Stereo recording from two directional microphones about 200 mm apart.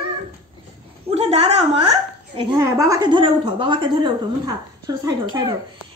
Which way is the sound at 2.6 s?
15° right (ahead or behind).